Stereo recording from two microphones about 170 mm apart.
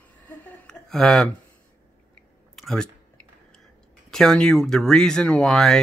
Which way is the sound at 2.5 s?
Centre (ahead or behind).